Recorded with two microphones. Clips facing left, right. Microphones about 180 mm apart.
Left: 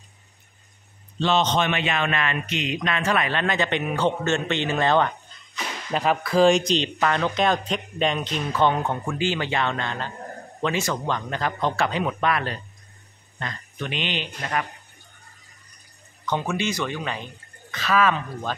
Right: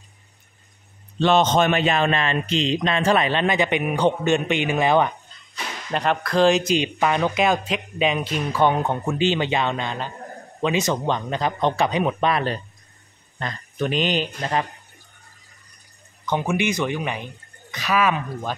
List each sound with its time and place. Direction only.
1.2 s speech: 50° right (ahead or behind); by 5.1 s 10° right (ahead or behind)
5.9 s speech: 5° left (ahead or behind); by 12.5 s 25° right (ahead or behind)
13.4 s speech: 40° right (ahead or behind)
14.4 s speech: 25° right (ahead or behind)
16.3 s speech: 15° right (ahead or behind)